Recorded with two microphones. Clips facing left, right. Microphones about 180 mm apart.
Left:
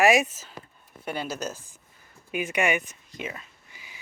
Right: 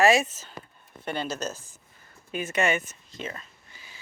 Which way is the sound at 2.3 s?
15° left (ahead or behind).